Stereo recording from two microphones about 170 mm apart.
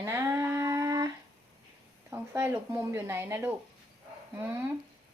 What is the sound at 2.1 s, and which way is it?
Speech, 10° right (ahead or behind).